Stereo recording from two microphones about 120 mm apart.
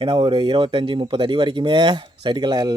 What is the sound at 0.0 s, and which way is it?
Speech, 45° right (ahead or behind).